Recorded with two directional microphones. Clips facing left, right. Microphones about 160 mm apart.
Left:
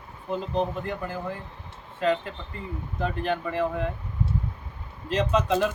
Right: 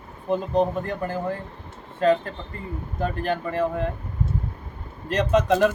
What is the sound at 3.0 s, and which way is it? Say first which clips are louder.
Speech: right 2 dB; 45° right (ahead or behind).